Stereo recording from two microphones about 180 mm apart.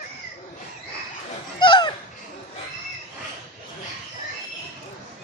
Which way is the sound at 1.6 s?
25° left (ahead or behind).